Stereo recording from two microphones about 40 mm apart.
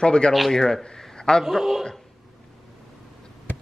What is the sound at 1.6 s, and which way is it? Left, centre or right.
Speech, centre.